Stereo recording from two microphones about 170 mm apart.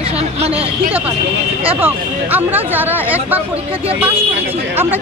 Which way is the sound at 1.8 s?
10° right (ahead or behind).